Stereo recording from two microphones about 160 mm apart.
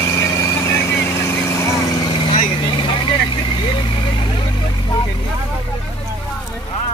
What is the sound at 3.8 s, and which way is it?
Vehicle, 30° left (ahead or behind).